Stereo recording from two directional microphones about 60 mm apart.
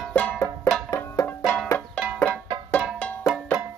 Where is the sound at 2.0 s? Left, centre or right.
Left.